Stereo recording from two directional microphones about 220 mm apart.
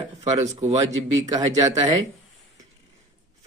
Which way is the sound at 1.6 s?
15° right (ahead or behind).